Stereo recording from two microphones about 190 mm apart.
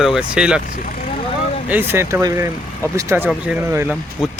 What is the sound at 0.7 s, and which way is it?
Speech, 45° left (ahead or behind).